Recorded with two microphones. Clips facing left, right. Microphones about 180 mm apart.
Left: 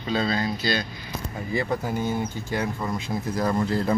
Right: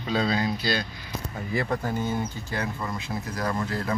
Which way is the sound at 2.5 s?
15° left (ahead or behind).